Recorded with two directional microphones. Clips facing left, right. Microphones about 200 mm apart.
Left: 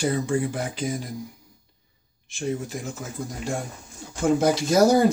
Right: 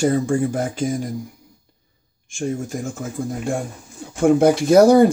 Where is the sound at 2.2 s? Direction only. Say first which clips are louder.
Right 3 dB; 45° right (ahead or behind).